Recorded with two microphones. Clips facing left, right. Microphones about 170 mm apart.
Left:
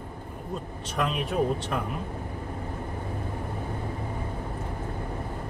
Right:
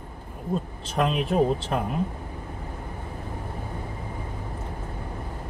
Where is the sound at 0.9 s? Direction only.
35° right (ahead or behind).